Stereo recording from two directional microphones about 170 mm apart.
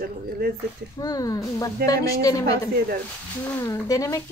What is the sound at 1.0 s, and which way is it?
Speech, 20° left (ahead or behind).